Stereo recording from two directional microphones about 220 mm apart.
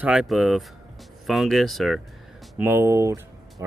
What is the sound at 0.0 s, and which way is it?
Speech, 5° right (ahead or behind).